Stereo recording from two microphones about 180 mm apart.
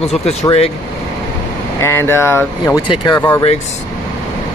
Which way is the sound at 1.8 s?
15° left (ahead or behind).